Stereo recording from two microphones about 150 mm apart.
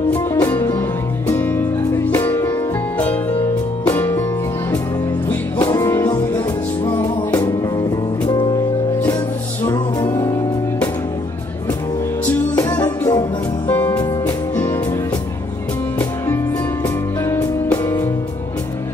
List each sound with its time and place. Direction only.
0.1 s music: 15° left (ahead or behind)
3.9 s music: 15° left (ahead or behind)
5.8 s music: 15° left (ahead or behind)
8.3 s music: 30° left (ahead or behind)
10.0 s music: 30° left (ahead or behind)
12.6 s music: 20° left (ahead or behind)
17.3 s music: 15° left (ahead or behind)